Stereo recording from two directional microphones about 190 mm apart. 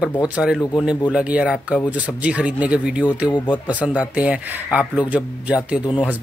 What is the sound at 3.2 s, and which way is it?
Speech, 25° left (ahead or behind).